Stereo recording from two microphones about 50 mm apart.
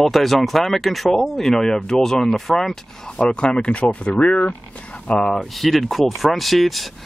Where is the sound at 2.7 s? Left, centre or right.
Centre.